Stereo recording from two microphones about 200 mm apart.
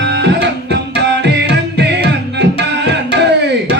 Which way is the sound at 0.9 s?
60° right (ahead or behind).